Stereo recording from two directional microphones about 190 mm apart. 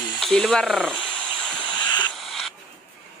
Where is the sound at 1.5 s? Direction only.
5° left (ahead or behind).